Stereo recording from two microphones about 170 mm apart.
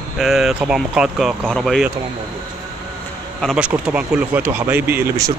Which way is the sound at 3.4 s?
5° right (ahead or behind).